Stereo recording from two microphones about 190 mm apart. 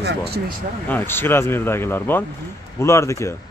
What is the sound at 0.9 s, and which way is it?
Speech, 10° left (ahead or behind).